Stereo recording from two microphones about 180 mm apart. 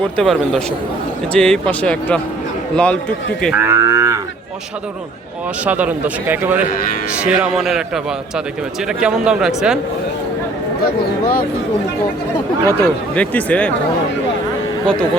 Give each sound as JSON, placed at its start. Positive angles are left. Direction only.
{"t": 0.2, "sound": "speech", "side_deg": 0}
{"t": 3.5, "sound": "a man's voice", "side_deg": -15}
{"t": 5.6, "sound": "a man's voice", "side_deg": -10}
{"t": 10.8, "sound": "speech", "side_deg": 55}
{"t": 12.6, "sound": "speech", "side_deg": 10}